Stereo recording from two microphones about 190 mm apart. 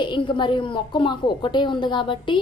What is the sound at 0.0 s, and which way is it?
A woman's voice, 25° left (ahead or behind).